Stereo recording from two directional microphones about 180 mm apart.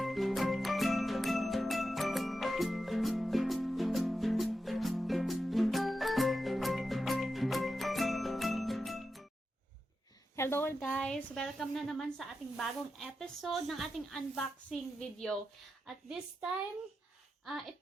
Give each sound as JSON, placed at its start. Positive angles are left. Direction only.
{"t": 0.0, "sound": "music", "side_deg": 0}
{"t": 10.3, "sound": "a woman's voice", "side_deg": 15}